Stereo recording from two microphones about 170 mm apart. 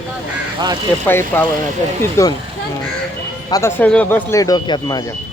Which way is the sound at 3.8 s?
10° left (ahead or behind).